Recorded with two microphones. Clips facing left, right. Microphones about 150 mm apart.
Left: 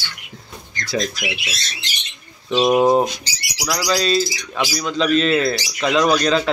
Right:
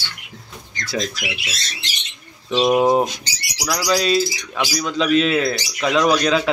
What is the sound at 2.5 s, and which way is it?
Speech, centre (ahead or behind).